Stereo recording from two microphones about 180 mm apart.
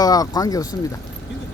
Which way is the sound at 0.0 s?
20° left (ahead or behind).